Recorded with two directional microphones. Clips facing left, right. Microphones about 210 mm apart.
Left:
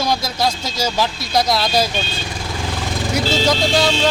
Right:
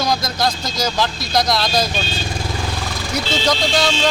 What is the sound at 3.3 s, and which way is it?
Speech, 5° left (ahead or behind).